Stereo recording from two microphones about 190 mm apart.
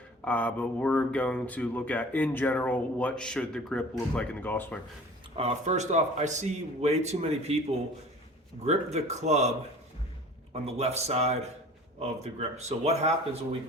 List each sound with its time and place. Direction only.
0.3 s speech: 10° left (ahead or behind)
5.4 s speech: 35° right (ahead or behind)
8.6 s speech: 35° right (ahead or behind)
10.5 s speech: 35° right (ahead or behind)